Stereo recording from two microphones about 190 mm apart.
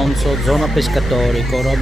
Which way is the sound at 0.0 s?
Centre (ahead or behind).